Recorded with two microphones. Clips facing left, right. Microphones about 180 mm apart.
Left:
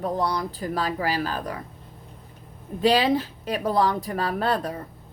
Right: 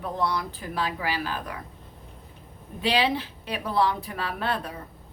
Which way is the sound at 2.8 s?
45° left (ahead or behind).